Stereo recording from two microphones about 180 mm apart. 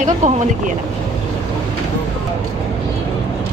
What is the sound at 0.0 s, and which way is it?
Speech, 40° right (ahead or behind).